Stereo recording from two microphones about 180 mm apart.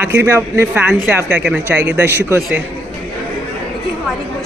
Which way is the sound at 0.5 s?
10° right (ahead or behind).